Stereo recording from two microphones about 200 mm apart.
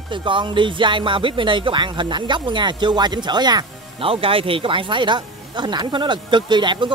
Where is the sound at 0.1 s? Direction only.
25° right (ahead or behind).